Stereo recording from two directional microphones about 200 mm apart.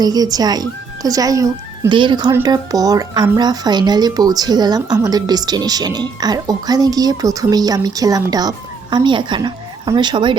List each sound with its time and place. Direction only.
0.0 s speech: 20° right (ahead or behind)